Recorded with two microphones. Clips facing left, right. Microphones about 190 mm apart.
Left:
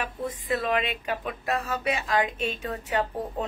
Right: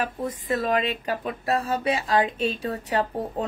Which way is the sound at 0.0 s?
45° right (ahead or behind).